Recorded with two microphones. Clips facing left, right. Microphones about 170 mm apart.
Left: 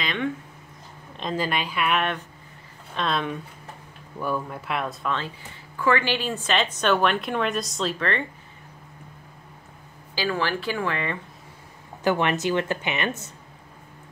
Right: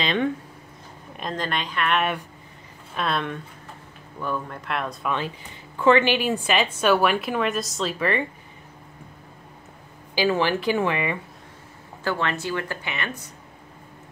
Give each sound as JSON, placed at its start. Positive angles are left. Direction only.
{"t": 0.0, "sound": "a sound", "side_deg": -30}
{"t": 1.3, "sound": "a woman's voice", "side_deg": 5}
{"t": 5.0, "sound": "a woman's voice", "side_deg": -15}
{"t": 10.1, "sound": "a woman's voice", "side_deg": -15}
{"t": 12.0, "sound": "speech", "side_deg": 20}